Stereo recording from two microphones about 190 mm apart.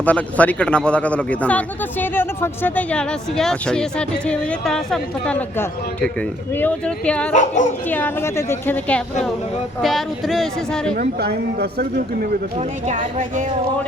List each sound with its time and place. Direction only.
0.0 s speech: 5° left (ahead or behind)
7.3 s speech: 40° left (ahead or behind)
7.9 s speech: 10° left (ahead or behind)
10.9 s speech: 50° right (ahead or behind)
12.5 s a woman's voice: 40° right (ahead or behind)